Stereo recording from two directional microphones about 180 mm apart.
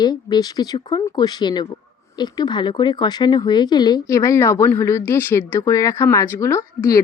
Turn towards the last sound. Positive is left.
turn(degrees=15)  # may be behind; listen again after turning